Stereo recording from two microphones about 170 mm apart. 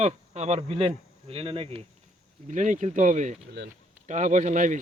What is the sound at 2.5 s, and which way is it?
Speech, 45° right (ahead or behind).